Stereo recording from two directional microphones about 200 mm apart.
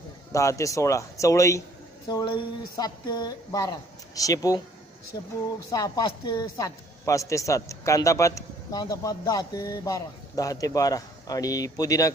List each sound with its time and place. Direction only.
0.3 s a woman's voice: 15° left (ahead or behind)